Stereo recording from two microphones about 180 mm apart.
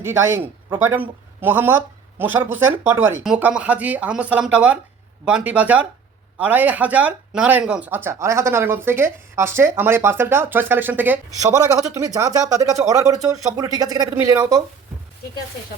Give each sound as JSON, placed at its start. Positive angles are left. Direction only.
{"t": 0.0, "sound": "speech", "side_deg": -15}